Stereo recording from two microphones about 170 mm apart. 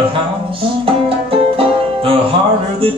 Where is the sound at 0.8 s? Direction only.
35° right (ahead or behind).